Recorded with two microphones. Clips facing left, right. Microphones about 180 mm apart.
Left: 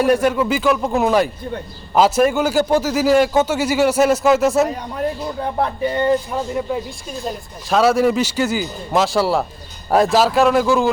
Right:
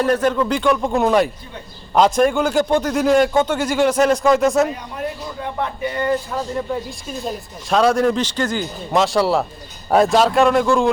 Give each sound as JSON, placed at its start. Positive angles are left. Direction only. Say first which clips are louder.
{"t": 0.0, "sound": "a man's voice", "louder": "left 2 dB", "side_deg": 10}
{"t": 5.4, "sound": "speech", "louder": "left 3 dB", "side_deg": 35}
{"t": 6.3, "sound": "a man's voice", "louder": "left 1 dB", "side_deg": 10}